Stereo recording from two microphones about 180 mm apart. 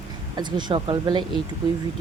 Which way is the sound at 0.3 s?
25° right (ahead or behind).